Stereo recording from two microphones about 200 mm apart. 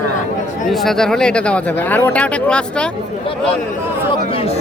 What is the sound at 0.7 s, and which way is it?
Speech, centre (ahead or behind).